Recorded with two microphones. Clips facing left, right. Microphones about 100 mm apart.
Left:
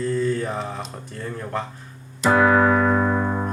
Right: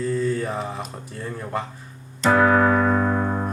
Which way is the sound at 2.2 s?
10° left (ahead or behind).